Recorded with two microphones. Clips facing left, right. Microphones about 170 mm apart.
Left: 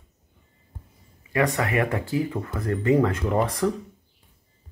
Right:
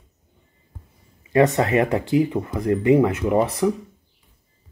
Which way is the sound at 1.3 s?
25° right (ahead or behind).